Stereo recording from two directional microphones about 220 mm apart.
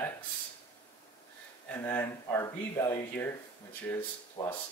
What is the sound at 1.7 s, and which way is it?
Speech, 10° left (ahead or behind).